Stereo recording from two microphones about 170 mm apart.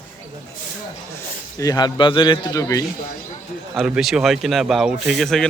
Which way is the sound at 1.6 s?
20° left (ahead or behind).